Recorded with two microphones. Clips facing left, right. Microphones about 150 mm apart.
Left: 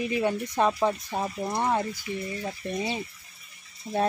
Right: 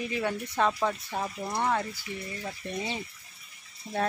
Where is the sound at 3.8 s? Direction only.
20° left (ahead or behind).